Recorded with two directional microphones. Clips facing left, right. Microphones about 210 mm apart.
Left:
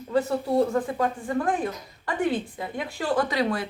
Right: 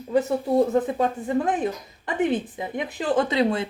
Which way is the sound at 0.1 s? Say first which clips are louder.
Right 2 dB; 20° right (ahead or behind).